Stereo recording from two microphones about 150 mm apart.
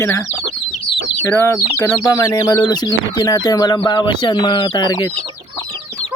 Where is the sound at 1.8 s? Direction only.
25° left (ahead or behind).